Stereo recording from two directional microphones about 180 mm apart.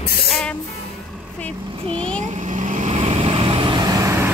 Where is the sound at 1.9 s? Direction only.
5° left (ahead or behind).